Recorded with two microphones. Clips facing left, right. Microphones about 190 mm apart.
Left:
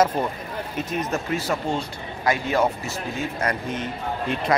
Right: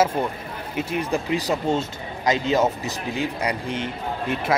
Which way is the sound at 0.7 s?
10° right (ahead or behind).